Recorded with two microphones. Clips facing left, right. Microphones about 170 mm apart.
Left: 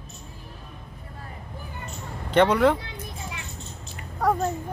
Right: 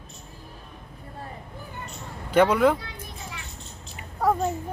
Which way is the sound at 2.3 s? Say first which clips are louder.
Even; 5° right (ahead or behind).